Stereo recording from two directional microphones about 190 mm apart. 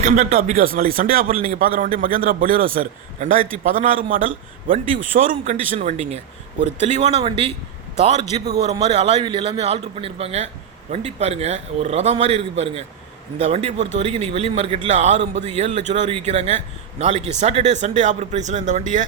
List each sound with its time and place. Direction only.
0.0 s a man's voice: 40° right (ahead or behind)